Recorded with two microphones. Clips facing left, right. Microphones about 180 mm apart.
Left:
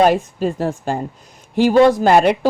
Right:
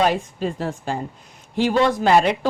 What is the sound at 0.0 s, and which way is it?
Speech, 45° left (ahead or behind).